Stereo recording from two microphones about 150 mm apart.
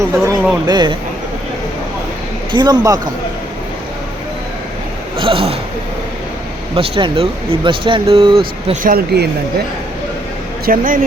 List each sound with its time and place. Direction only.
0.0 s speech: 20° right (ahead or behind)
0.7 s speech: 30° right (ahead or behind)
2.5 s speech: 30° right (ahead or behind)
5.1 s speech: 35° right (ahead or behind)
6.7 s speech: 35° right (ahead or behind)
8.7 s speech: 70° right (ahead or behind)
10.7 s speech: 70° right (ahead or behind)